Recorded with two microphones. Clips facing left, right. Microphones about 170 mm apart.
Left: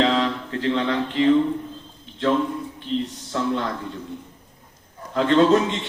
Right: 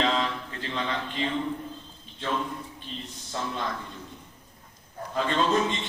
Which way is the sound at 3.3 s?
65° left (ahead or behind).